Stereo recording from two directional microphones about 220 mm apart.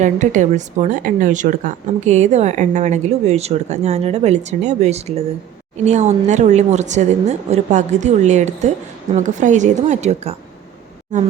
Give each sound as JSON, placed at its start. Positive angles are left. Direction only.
{"t": 0.0, "sound": "speech", "side_deg": -35}